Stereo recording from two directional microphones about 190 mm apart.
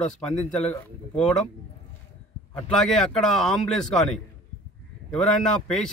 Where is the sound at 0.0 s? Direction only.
5° left (ahead or behind).